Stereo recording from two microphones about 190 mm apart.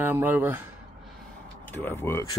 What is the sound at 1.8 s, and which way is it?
Speech, 10° left (ahead or behind).